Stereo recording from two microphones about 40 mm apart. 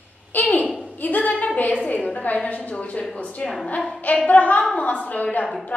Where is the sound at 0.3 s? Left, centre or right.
Left.